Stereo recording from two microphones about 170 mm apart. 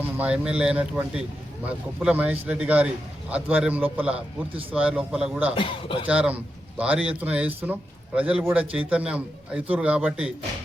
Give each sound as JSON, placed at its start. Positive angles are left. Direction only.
{"t": 0.2, "sound": "speech", "side_deg": -5}
{"t": 5.5, "sound": "speech", "side_deg": 30}
{"t": 6.1, "sound": "speech", "side_deg": -5}